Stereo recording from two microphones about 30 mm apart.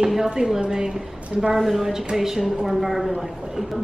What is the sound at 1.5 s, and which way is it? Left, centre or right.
A woman's voice, centre.